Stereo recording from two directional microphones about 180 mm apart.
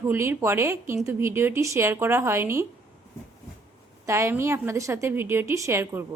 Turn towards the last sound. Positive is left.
turn(degrees=-15)  # may be behind; listen again after turning